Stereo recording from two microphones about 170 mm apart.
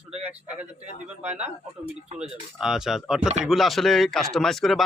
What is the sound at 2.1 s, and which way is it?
A man's voice, 5° right (ahead or behind).